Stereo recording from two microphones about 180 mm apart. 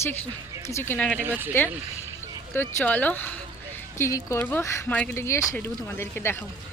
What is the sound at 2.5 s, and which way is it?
Speech, 10° left (ahead or behind).